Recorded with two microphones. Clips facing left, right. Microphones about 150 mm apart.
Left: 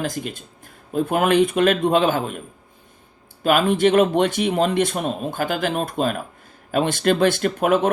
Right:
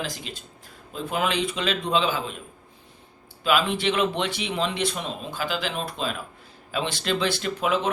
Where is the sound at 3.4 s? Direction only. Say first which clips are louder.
Left 6 dB; 50° left (ahead or behind).